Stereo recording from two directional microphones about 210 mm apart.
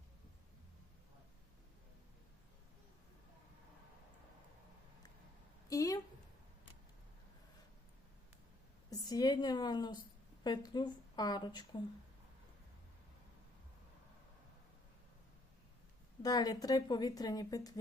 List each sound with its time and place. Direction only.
5.6 s a sound: 15° left (ahead or behind)
8.9 s a woman's voice: 20° left (ahead or behind)
16.2 s a woman's voice: 20° left (ahead or behind)